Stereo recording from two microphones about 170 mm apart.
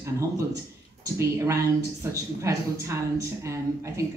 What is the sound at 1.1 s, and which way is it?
Speech, 15° right (ahead or behind).